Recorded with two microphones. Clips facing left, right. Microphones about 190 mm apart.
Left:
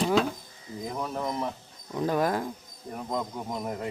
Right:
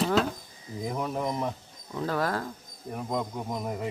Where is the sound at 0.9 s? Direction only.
5° right (ahead or behind).